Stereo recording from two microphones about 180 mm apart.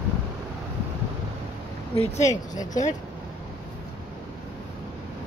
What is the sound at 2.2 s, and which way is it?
Speech, 20° left (ahead or behind).